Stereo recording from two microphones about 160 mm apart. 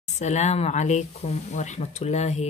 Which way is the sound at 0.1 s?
45° left (ahead or behind).